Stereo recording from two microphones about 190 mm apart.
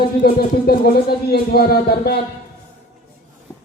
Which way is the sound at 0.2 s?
50° left (ahead or behind).